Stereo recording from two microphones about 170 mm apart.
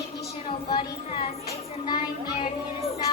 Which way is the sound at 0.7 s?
30° left (ahead or behind).